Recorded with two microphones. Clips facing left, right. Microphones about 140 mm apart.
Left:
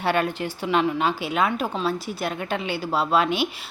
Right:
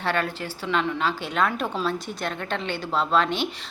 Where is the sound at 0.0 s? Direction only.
15° left (ahead or behind).